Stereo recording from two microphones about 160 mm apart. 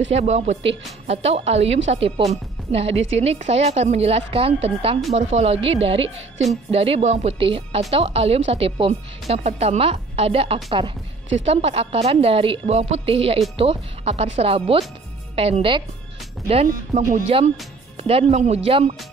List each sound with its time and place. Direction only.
0.1 s a woman's voice: 45° right (ahead or behind)
16.6 s speech: 55° right (ahead or behind)
17.9 s a woman's voice: 40° right (ahead or behind)